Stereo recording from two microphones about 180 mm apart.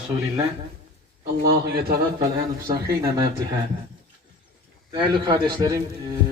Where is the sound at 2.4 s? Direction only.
20° right (ahead or behind).